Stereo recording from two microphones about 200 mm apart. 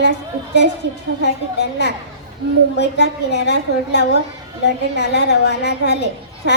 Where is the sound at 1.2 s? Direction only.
55° left (ahead or behind).